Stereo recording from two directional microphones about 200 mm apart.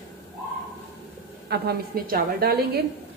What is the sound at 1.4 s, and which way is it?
Speech, 55° right (ahead or behind).